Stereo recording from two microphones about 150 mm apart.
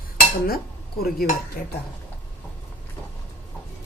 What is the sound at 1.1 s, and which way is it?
Speech, 75° left (ahead or behind).